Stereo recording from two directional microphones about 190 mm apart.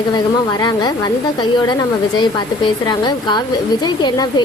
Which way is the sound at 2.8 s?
20° left (ahead or behind).